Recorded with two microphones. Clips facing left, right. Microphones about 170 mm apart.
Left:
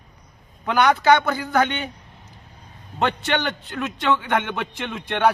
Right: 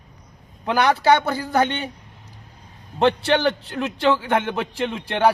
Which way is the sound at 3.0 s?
35° right (ahead or behind).